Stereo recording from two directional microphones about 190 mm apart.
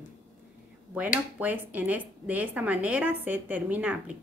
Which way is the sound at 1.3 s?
10° right (ahead or behind).